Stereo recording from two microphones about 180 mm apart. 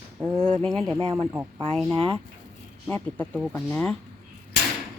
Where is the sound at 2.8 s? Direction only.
10° left (ahead or behind).